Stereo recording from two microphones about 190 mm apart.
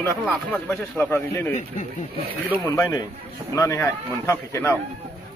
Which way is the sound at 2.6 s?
15° left (ahead or behind).